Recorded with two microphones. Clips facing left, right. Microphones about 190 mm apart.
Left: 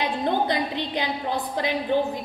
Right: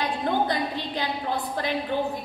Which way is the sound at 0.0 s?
20° left (ahead or behind).